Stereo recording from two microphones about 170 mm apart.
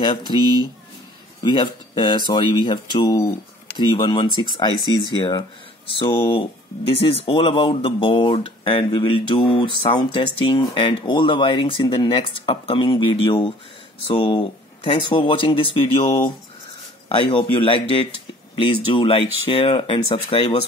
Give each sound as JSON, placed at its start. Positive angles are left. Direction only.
{"t": 0.0, "sound": "speech", "side_deg": 30}
{"t": 1.4, "sound": "speech", "side_deg": 25}